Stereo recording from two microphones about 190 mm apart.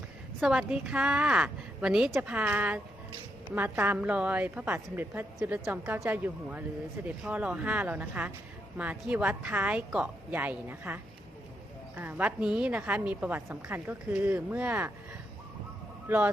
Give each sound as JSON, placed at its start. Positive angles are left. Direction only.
{"t": 0.3, "sound": "a woman's voice", "side_deg": -5}
{"t": 16.0, "sound": "speech", "side_deg": -10}